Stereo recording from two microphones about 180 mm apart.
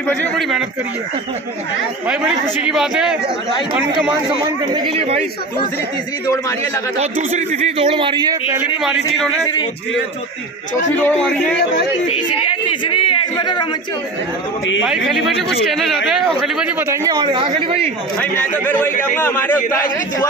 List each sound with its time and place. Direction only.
0.0 s a man's voice: 5° left (ahead or behind)
2.0 s a man's voice: 5° right (ahead or behind)
4.7 s speech: 30° right (ahead or behind)
7.0 s a man's voice: 40° right (ahead or behind)
11.0 s a man's voice: 10° left (ahead or behind)
12.1 s speech: 30° left (ahead or behind)
14.8 s a man's voice: centre (ahead or behind); by 17.9 s 30° right (ahead or behind)
19.1 s a man's voice: 10° left (ahead or behind)